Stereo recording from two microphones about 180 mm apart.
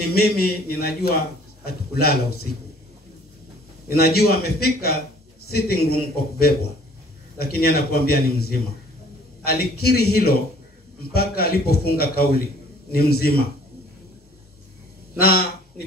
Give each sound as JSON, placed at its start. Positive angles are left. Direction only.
{"t": 0.1, "sound": "a man's voice", "side_deg": 60}
{"t": 3.9, "sound": "a man's voice", "side_deg": 60}
{"t": 15.1, "sound": "a man's voice", "side_deg": 60}